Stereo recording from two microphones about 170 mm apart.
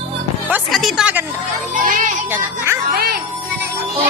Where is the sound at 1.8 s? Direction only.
50° right (ahead or behind).